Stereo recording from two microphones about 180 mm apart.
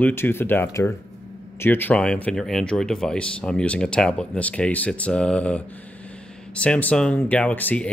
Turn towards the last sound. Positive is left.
turn(degrees=10)  # may be behind; listen again after turning